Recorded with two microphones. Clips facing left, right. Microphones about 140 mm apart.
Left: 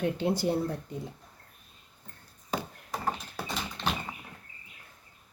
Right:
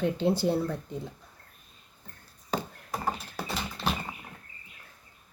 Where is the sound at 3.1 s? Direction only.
5° right (ahead or behind).